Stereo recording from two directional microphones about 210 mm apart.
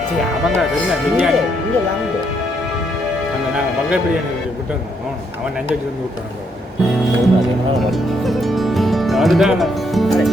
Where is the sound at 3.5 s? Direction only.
5° right (ahead or behind).